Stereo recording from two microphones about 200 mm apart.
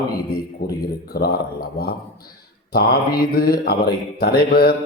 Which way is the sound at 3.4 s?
50° left (ahead or behind).